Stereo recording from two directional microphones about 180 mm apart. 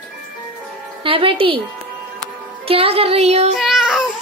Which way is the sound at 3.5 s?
Centre (ahead or behind).